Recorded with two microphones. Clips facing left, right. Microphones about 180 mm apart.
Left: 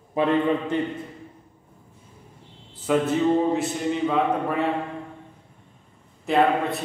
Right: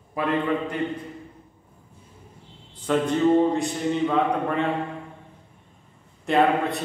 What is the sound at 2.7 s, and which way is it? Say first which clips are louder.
Speech: left 1 dB; 5° left (ahead or behind).